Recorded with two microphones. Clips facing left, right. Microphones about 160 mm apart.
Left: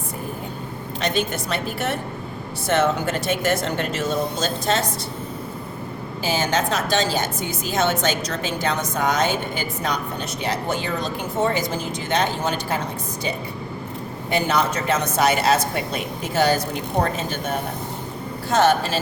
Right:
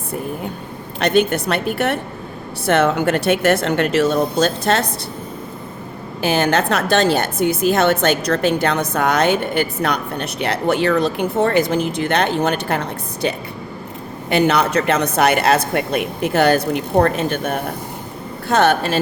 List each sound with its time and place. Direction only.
0.9 s a woman's voice: 60° right (ahead or behind)
6.2 s a woman's voice: 65° right (ahead or behind)